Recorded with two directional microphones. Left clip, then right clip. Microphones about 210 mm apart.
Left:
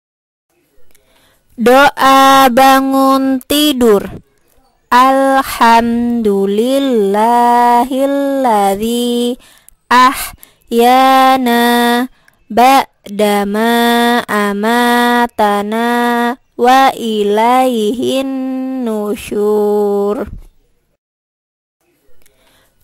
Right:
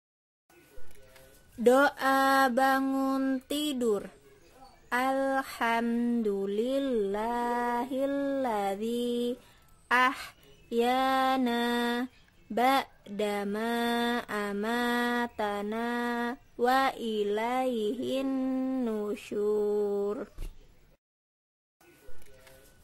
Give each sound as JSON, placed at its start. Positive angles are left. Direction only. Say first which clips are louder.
{"t": 1.6, "sound": "speech", "louder": "left 16 dB", "side_deg": 45}